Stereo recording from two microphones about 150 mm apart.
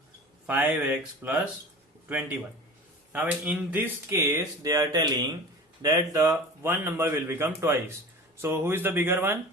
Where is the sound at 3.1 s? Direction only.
10° right (ahead or behind).